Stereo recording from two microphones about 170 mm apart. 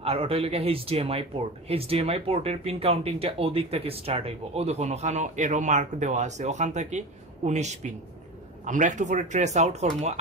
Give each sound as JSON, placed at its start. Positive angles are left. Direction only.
{"t": 0.0, "sound": "speech", "side_deg": -35}